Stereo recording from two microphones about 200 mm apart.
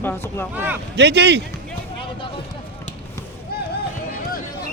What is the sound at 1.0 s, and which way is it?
Speech, 60° right (ahead or behind).